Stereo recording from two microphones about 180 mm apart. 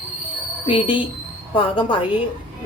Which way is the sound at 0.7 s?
30° left (ahead or behind).